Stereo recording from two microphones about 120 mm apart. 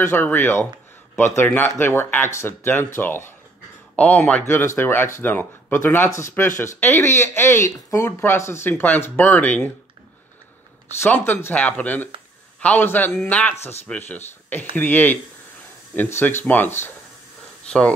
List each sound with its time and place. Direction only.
0.0 s a man's voice: 15° left (ahead or behind)
3.9 s speech: 10° left (ahead or behind)
11.0 s a man's voice: 15° left (ahead or behind)